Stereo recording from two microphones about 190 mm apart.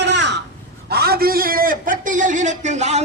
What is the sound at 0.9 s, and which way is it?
A man's voice, 55° right (ahead or behind).